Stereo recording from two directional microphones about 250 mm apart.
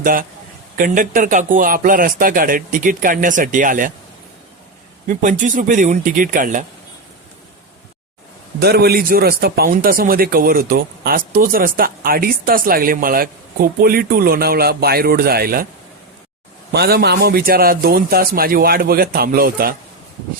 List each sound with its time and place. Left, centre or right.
0.0 s a man's voice: right
5.0 s speech: right
8.5 s speech: right
16.7 s speech: right